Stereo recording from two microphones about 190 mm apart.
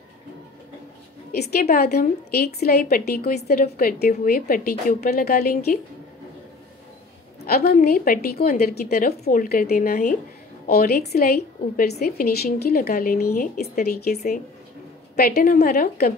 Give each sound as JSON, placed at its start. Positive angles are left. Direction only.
{"t": 1.3, "sound": "a woman's voice", "side_deg": 55}
{"t": 7.4, "sound": "a woman's voice", "side_deg": 55}